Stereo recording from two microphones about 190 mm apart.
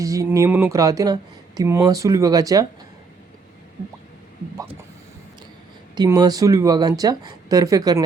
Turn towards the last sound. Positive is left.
turn(degrees=-20)  # may be behind; listen again after turning